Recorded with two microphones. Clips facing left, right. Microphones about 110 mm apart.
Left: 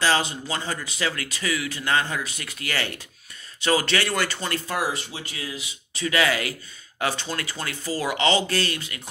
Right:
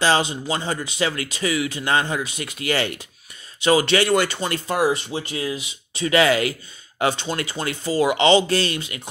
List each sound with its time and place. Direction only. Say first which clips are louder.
0.0 s speech: right 3 dB; 20° right (ahead or behind)